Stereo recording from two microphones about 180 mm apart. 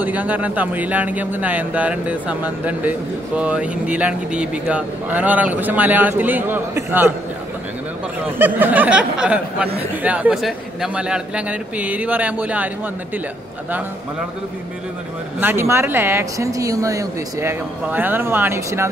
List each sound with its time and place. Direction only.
0.0 s speech: 10° right (ahead or behind)
8.4 s speech: 10° right (ahead or behind)
15.4 s speech: 15° right (ahead or behind)